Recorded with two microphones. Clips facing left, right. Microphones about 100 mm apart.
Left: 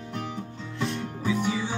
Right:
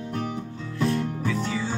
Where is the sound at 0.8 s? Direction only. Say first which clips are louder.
Right 6 dB; 20° left (ahead or behind).